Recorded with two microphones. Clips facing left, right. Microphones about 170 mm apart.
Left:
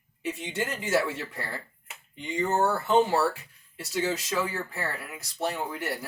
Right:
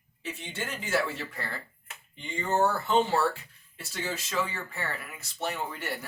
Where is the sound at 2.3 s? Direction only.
15° left (ahead or behind).